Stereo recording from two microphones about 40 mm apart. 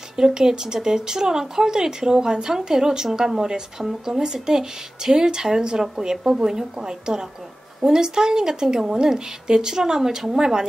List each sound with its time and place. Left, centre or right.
0.1 s speech: centre